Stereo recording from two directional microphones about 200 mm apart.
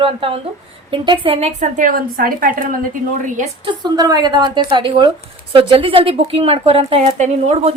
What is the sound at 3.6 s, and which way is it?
A woman's voice, 20° right (ahead or behind).